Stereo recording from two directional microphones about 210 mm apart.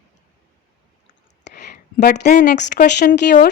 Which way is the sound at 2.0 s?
50° left (ahead or behind).